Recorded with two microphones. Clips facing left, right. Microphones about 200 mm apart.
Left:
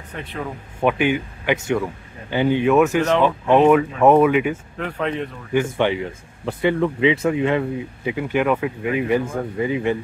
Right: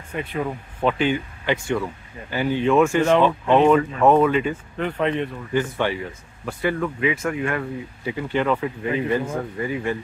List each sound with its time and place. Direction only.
0.1 s speech: centre (ahead or behind)
0.8 s speech: 10° left (ahead or behind)
2.6 s speech: 5° left (ahead or behind)
4.7 s speech: centre (ahead or behind)
5.5 s speech: 15° left (ahead or behind)